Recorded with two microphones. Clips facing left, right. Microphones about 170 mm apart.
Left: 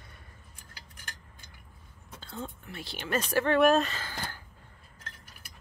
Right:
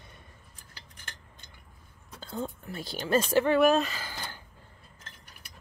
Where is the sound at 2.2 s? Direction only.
40° right (ahead or behind).